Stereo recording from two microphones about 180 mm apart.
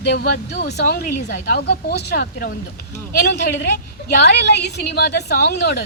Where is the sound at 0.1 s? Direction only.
60° left (ahead or behind).